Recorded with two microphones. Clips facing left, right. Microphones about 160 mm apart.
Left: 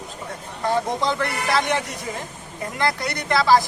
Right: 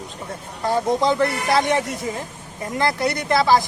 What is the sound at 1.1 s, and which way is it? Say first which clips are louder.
Speech: right 4 dB; 25° right (ahead or behind).